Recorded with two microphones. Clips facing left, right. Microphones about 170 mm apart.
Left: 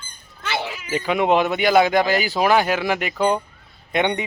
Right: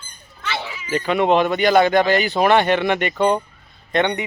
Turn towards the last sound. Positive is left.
turn(degrees=15)  # may be behind; listen again after turning